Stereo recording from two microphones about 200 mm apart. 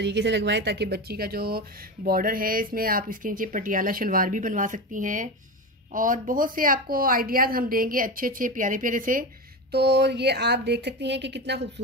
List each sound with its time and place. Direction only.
0.0 s a woman's voice: 60° right (ahead or behind); by 9.2 s 40° right (ahead or behind)
9.7 s a woman's voice: 55° right (ahead or behind)